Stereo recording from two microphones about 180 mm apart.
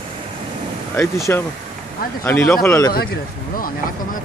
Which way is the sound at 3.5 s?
50° left (ahead or behind).